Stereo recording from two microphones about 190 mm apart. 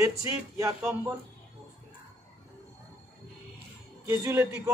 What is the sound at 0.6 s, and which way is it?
Speech, 15° right (ahead or behind).